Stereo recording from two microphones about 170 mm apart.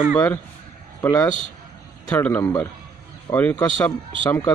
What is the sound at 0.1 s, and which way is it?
A man's voice, 10° left (ahead or behind).